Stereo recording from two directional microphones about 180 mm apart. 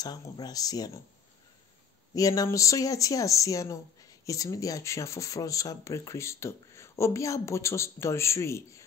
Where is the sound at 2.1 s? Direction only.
20° left (ahead or behind).